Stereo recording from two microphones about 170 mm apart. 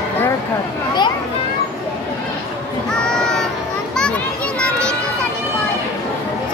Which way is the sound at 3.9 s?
5° left (ahead or behind).